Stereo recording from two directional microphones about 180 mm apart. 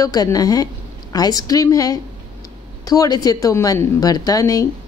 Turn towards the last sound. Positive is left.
turn(degrees=20)  # may be behind; listen again after turning